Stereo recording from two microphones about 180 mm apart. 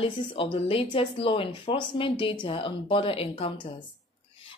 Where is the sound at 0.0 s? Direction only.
30° left (ahead or behind).